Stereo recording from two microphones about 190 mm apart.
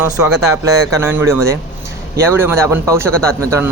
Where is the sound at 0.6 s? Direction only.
15° right (ahead or behind).